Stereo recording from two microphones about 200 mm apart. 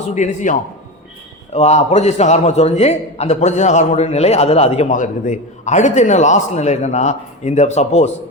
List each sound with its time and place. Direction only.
0.1 s a man's voice: 40° left (ahead or behind)
1.5 s a man's voice: 35° left (ahead or behind)